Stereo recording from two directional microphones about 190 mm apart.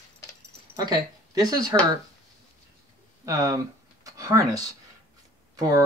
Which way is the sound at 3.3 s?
15° right (ahead or behind).